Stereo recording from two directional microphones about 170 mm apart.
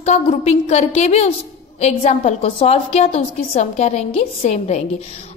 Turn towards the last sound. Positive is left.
turn(degrees=40)  # may be behind; listen again after turning